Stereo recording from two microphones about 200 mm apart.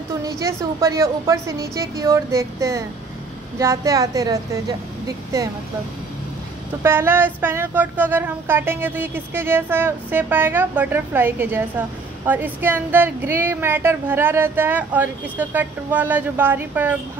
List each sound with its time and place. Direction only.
0.2 s speech: 15° right (ahead or behind)
6.8 s speech: 10° right (ahead or behind)